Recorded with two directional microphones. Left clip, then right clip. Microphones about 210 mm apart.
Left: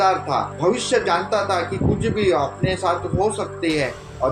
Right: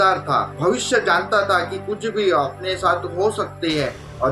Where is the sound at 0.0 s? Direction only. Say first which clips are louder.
Right 1 dB; 20° right (ahead or behind).